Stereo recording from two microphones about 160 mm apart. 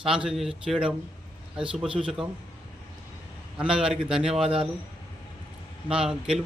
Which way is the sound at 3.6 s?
5° right (ahead or behind).